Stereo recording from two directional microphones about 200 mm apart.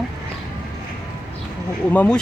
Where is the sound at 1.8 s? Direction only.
5° left (ahead or behind).